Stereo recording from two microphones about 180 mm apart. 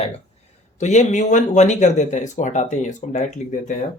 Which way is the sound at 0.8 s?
40° left (ahead or behind).